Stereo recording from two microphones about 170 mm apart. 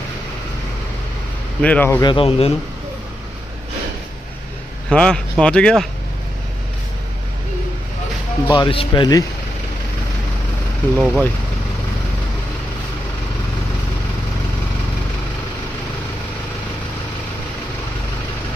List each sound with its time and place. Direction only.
1.6 s speech: 10° left (ahead or behind)
2.0 s speech: 30° left (ahead or behind)
4.9 s speech: 5° left (ahead or behind)
8.4 s speech: 25° left (ahead or behind)
10.9 s speech: 5° right (ahead or behind)